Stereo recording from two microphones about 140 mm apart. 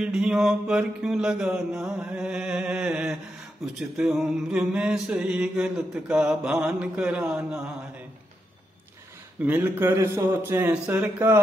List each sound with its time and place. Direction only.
0.0 s mantra: 5° right (ahead or behind)
9.4 s a man's voice: 15° right (ahead or behind)